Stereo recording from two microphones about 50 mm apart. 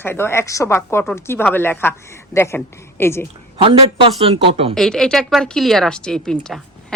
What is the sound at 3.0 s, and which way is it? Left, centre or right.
Speech, left.